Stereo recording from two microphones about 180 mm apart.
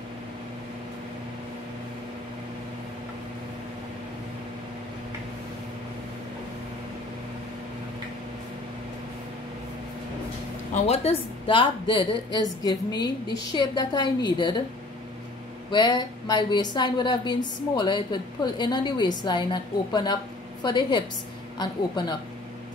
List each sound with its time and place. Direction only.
10.9 s a woman's voice: 30° left (ahead or behind)
15.7 s a woman's voice: 25° left (ahead or behind)